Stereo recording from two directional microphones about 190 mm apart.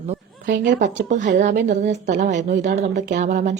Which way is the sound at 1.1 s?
40° right (ahead or behind).